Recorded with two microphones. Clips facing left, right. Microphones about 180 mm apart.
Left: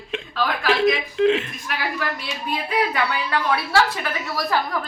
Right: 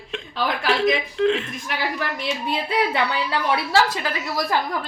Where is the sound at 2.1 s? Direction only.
20° right (ahead or behind).